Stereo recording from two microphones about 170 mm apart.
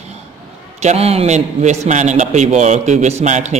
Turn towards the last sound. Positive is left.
turn(degrees=-45)  # may be behind; listen again after turning